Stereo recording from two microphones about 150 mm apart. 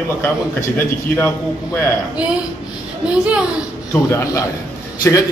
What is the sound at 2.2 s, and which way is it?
Music, 10° right (ahead or behind).